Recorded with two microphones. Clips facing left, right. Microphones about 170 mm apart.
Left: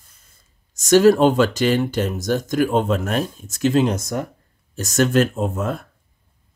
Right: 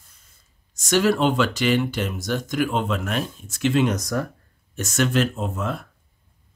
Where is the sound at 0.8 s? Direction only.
40° left (ahead or behind); by 4.3 s 25° left (ahead or behind).